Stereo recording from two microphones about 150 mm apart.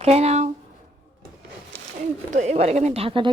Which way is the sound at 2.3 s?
50° right (ahead or behind).